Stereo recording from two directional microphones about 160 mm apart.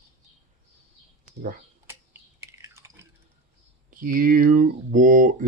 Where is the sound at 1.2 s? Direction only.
55° right (ahead or behind).